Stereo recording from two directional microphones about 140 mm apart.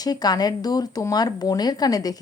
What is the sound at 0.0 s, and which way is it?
Speech, 30° left (ahead or behind).